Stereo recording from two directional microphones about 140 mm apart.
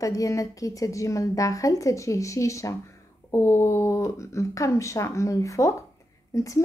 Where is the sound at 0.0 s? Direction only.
25° left (ahead or behind).